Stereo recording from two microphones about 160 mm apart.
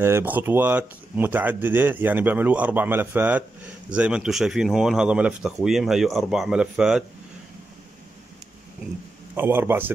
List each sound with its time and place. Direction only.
0.0 s speech: 15° right (ahead or behind)
9.3 s speech: 10° right (ahead or behind)